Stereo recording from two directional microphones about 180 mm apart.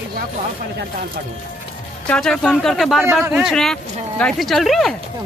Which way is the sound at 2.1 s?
5° left (ahead or behind).